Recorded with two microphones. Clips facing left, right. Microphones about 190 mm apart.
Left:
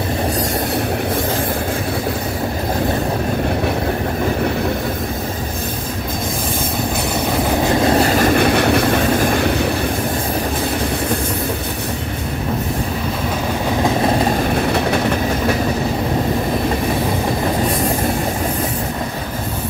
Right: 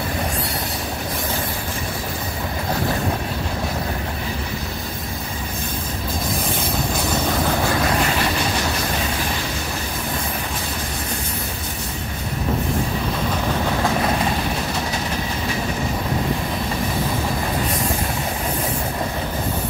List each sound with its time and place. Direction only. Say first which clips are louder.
7.8 s vehicle: left 7 dB; 35° left (ahead or behind)
8.4 s train: left 9 dB; 60° left (ahead or behind)
14.7 s train: left 8 dB; 60° left (ahead or behind)